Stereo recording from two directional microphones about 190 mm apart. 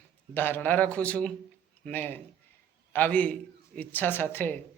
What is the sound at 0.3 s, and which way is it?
A man's voice, 10° left (ahead or behind).